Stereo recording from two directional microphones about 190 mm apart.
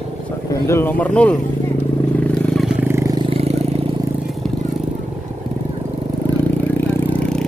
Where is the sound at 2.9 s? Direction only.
15° right (ahead or behind).